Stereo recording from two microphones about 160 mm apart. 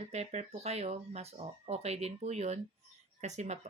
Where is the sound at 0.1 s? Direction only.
45° right (ahead or behind).